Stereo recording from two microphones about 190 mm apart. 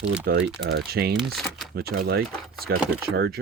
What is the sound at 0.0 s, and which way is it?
Speech, 5° right (ahead or behind).